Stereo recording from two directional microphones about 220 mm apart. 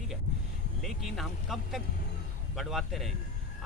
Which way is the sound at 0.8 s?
Centre (ahead or behind).